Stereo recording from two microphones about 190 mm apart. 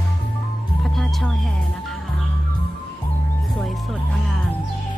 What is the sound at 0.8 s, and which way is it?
Speech, centre (ahead or behind).